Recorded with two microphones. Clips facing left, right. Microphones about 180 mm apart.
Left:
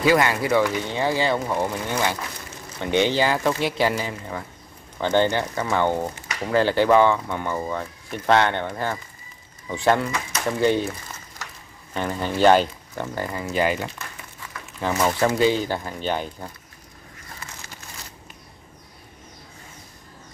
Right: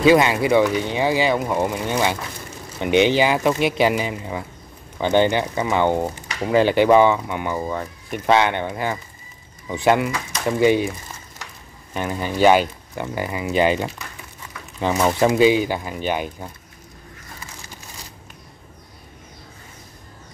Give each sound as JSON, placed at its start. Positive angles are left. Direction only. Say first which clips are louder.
{"t": 0.0, "sound": "speech", "louder": "right 4 dB", "side_deg": -20}
{"t": 11.9, "sound": "speech", "louder": "right 1 dB", "side_deg": -10}
{"t": 15.0, "sound": "speech", "louder": "right 4 dB", "side_deg": -15}